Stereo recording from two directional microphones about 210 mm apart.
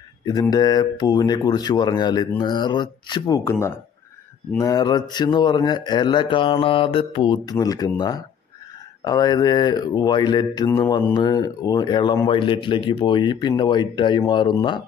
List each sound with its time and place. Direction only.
0.2 s speech: 15° left (ahead or behind)